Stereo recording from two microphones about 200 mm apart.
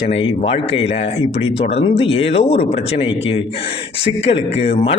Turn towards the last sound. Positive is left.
turn(degrees=30)  # may be behind; listen again after turning